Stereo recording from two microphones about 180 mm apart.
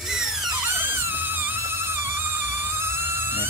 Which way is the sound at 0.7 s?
10° right (ahead or behind).